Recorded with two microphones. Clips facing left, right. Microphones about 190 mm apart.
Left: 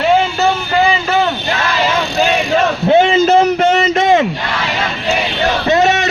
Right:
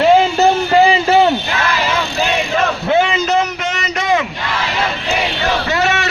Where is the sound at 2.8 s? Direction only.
25° left (ahead or behind).